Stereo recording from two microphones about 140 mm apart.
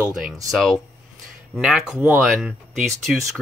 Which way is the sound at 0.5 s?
5° left (ahead or behind).